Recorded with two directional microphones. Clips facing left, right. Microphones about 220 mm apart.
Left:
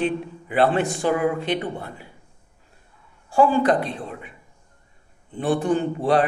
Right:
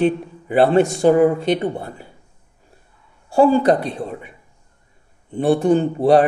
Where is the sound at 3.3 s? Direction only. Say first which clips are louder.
Right 4 dB; 40° right (ahead or behind).